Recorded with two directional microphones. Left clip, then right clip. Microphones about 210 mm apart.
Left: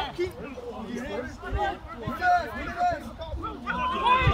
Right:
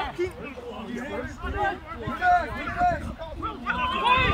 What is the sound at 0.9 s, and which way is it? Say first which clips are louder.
Chatter: right 1 dB; 50° left (ahead or behind).